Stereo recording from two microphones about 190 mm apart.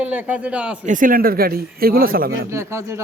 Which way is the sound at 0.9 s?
45° right (ahead or behind).